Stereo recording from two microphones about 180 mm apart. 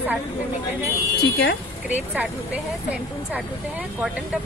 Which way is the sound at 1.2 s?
70° left (ahead or behind).